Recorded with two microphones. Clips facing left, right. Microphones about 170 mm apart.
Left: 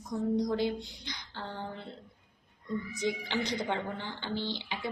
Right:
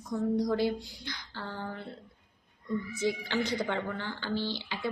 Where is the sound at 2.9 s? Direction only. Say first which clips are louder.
Right 2 dB; 15° left (ahead or behind).